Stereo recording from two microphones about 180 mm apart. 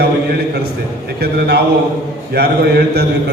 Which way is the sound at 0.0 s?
65° right (ahead or behind).